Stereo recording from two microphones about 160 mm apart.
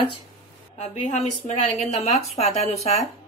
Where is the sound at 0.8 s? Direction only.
45° left (ahead or behind).